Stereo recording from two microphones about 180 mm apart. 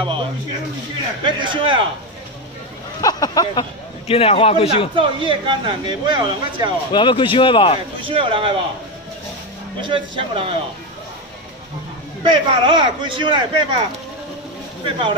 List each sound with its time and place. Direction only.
1.2 s speech: 25° right (ahead or behind)
3.0 s a sound: 20° left (ahead or behind)
4.1 s a man's voice: 30° left (ahead or behind)
4.9 s speech: 30° right (ahead or behind)
6.9 s speech: 25° left (ahead or behind)
8.0 s speech: 30° right (ahead or behind)
9.8 s speech: 25° right (ahead or behind)
12.2 s speech: 25° right (ahead or behind)
14.9 s speech: 30° right (ahead or behind)